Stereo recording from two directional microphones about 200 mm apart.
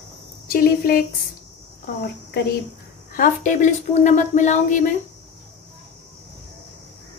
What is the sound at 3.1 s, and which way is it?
Speech, 40° left (ahead or behind).